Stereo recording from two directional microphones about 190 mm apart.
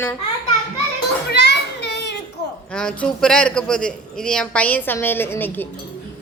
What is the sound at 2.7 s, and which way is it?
A man's voice, 5° left (ahead or behind).